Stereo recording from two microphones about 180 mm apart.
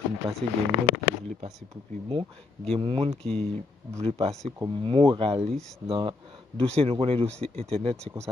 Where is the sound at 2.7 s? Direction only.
30° right (ahead or behind).